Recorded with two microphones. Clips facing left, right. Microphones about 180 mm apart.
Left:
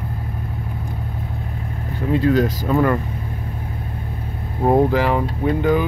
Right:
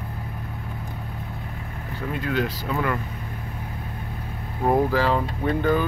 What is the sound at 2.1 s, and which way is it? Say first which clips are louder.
Speech: left 9 dB; 35° left (ahead or behind).